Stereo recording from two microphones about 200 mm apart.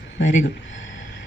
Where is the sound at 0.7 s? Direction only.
75° left (ahead or behind).